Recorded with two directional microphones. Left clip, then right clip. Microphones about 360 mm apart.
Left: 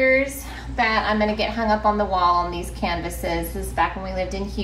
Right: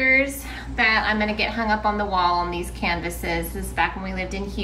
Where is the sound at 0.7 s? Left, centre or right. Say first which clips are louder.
Even; centre.